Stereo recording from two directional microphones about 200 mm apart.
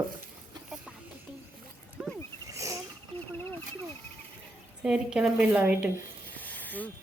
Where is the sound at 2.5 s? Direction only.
15° right (ahead or behind).